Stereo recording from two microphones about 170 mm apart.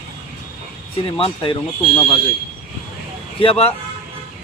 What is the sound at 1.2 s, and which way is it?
Speech, 30° left (ahead or behind).